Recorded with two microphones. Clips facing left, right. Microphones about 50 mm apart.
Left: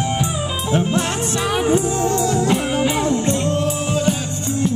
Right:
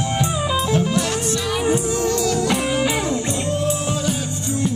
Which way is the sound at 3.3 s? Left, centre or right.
Left.